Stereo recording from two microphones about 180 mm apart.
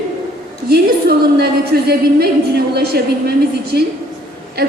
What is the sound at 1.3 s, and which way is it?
A woman's voice, 60° right (ahead or behind).